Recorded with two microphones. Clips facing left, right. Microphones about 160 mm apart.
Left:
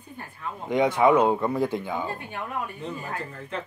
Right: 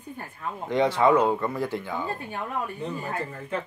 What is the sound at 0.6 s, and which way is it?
Speech, 15° left (ahead or behind).